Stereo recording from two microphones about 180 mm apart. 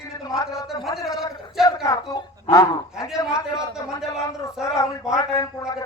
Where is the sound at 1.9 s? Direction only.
20° left (ahead or behind).